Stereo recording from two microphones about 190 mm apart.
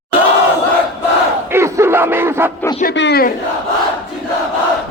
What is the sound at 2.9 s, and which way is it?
Speech, 60° left (ahead or behind).